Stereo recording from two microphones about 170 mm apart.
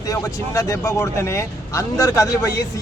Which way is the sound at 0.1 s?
20° left (ahead or behind).